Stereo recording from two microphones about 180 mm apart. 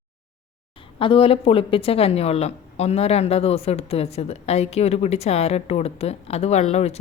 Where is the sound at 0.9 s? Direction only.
30° left (ahead or behind).